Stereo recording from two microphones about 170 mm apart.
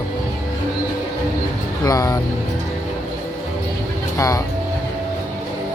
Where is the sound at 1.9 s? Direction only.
20° left (ahead or behind).